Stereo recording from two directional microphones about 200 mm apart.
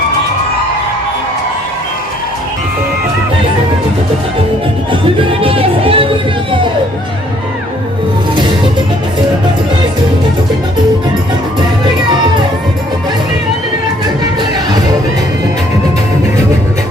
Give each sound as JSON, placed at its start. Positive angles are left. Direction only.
{"t": 4.9, "sound": "music", "side_deg": -25}